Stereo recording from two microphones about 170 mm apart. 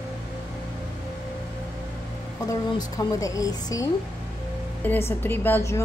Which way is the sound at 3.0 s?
20° left (ahead or behind).